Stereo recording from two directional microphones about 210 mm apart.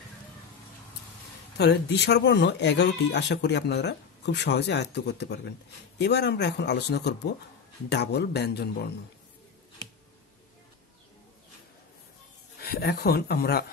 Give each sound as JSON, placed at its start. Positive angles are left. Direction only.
{"t": 1.6, "sound": "speech", "side_deg": 55}
{"t": 12.5, "sound": "speech", "side_deg": 50}